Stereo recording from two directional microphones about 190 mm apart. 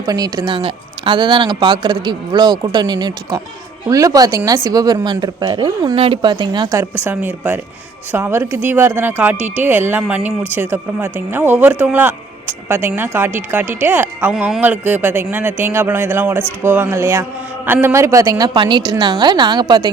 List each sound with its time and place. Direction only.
0.0 s speech: 20° right (ahead or behind)